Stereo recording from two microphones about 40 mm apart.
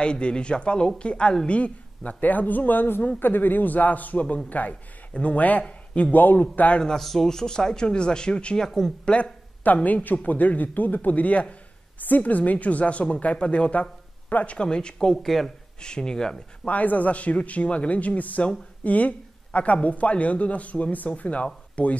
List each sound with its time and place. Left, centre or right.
0.0 s a man's voice: left
7.0 s speech: centre; by 8.5 s left
8.5 s speech: centre
9.0 s speech: left
9.6 s a man's voice: left
15.2 s speech: centre
15.8 s a man's voice: left
16.6 s speech: left